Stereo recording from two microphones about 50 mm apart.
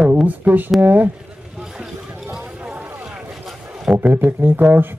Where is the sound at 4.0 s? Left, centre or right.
Right.